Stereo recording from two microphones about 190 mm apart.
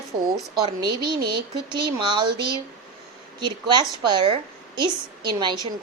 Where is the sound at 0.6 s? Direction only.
25° right (ahead or behind).